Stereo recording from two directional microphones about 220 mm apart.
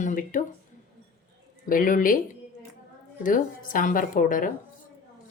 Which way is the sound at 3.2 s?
40° left (ahead or behind).